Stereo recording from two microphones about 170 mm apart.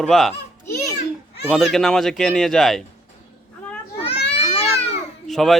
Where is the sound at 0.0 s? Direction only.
Centre (ahead or behind).